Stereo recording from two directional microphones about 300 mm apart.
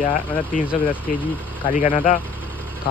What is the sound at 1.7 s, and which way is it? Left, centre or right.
Speech, left.